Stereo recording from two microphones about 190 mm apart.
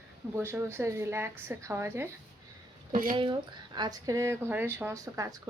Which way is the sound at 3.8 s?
20° right (ahead or behind).